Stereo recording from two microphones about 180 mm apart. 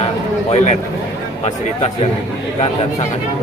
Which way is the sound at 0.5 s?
40° left (ahead or behind).